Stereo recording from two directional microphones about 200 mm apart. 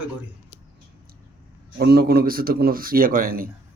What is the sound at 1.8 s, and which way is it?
Speech, 50° right (ahead or behind).